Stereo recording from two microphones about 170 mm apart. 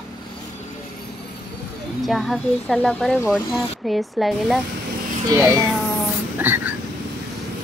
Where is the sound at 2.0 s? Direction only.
Centre (ahead or behind).